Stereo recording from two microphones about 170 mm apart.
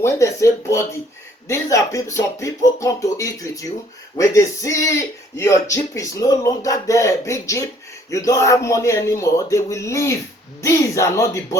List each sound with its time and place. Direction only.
0.0 s a man's voice: 15° left (ahead or behind)